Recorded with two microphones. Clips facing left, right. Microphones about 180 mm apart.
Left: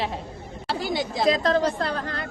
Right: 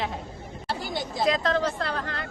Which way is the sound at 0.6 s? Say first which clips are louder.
Left 5 dB; 90° left.